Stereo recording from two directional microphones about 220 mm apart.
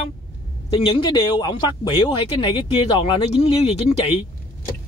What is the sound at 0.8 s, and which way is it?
Speech, 25° left (ahead or behind).